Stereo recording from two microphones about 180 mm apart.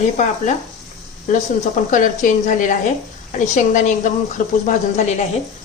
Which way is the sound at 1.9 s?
45° left (ahead or behind).